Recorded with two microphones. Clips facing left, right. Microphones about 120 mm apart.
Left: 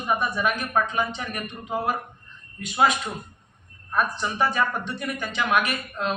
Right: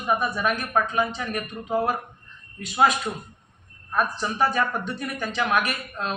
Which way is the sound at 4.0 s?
35° right (ahead or behind).